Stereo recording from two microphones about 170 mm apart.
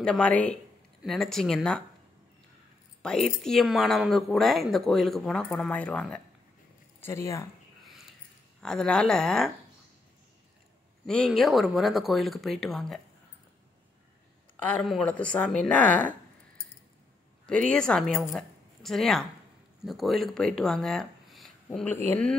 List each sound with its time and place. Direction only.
0.0 s a woman's voice: 5° left (ahead or behind)
3.0 s a woman's voice: 5° left (ahead or behind)
8.5 s speech: 5° left (ahead or behind)
11.1 s speech: centre (ahead or behind)
14.6 s a woman's voice: 5° left (ahead or behind)
17.5 s a woman's voice: 5° left (ahead or behind)